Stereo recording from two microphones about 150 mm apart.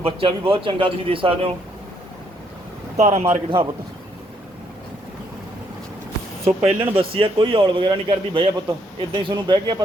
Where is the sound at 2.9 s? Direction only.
45° right (ahead or behind).